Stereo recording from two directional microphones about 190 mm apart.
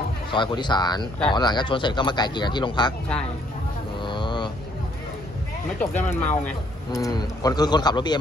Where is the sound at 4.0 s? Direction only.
25° left (ahead or behind).